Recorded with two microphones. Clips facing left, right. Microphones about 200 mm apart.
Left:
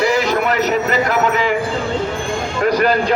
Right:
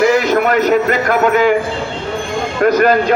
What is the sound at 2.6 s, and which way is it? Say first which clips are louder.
Speech: right 4 dB; 50° right (ahead or behind).